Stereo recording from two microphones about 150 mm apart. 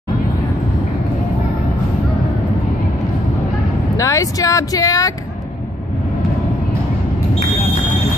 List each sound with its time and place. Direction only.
3.9 s speech: 20° left (ahead or behind)